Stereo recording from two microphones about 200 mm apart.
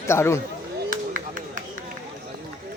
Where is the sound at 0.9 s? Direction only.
40° right (ahead or behind).